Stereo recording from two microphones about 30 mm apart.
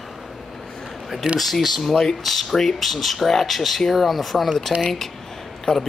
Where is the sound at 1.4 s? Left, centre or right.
Centre.